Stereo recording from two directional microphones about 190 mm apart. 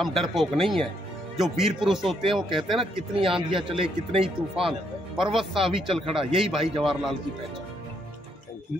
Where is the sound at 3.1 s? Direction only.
30° right (ahead or behind).